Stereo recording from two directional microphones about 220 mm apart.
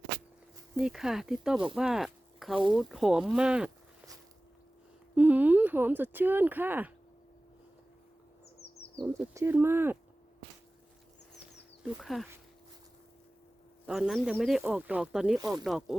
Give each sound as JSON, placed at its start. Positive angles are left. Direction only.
{"t": 0.8, "sound": "speech", "side_deg": -5}
{"t": 5.1, "sound": "speech", "side_deg": -5}
{"t": 9.0, "sound": "speech", "side_deg": -5}
{"t": 11.9, "sound": "speech", "side_deg": 0}
{"t": 13.8, "sound": "speech", "side_deg": -5}